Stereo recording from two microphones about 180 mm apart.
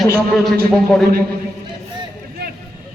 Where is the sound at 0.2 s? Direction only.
Centre (ahead or behind).